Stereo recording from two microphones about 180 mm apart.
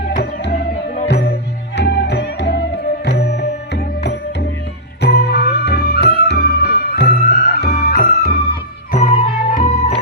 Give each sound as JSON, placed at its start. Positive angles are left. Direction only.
{"t": 0.2, "sound": "music", "side_deg": 65}
{"t": 7.7, "sound": "music", "side_deg": 40}
{"t": 7.9, "sound": "music", "side_deg": 55}
{"t": 8.9, "sound": "music", "side_deg": 35}